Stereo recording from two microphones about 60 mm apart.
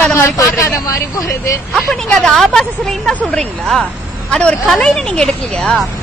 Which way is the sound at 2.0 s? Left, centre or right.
Centre.